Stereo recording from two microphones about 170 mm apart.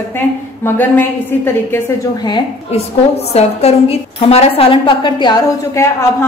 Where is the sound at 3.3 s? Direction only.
35° left (ahead or behind).